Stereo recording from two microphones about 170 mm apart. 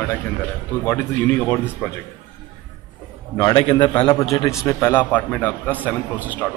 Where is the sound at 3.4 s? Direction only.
25° left (ahead or behind); by 6.6 s 5° left (ahead or behind).